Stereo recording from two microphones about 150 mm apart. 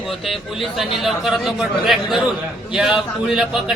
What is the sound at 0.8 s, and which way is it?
Speech, centre (ahead or behind).